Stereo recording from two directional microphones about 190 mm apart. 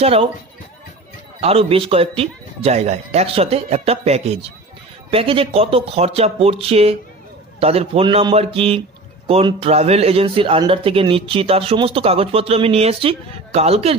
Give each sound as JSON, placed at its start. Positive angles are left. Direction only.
{"t": 0.0, "sound": "speech", "side_deg": -30}
{"t": 1.4, "sound": "speech", "side_deg": -30}